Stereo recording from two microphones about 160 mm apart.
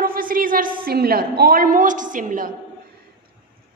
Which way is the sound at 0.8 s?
75° right (ahead or behind).